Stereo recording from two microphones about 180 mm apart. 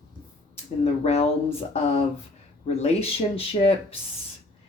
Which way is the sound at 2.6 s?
35° left (ahead or behind).